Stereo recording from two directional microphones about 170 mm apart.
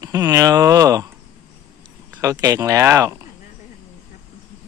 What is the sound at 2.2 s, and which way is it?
Speech, 20° right (ahead or behind).